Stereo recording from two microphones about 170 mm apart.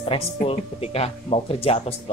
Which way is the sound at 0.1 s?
30° left (ahead or behind).